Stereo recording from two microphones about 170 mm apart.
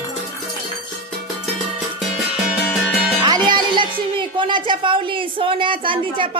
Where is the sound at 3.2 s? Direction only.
25° right (ahead or behind).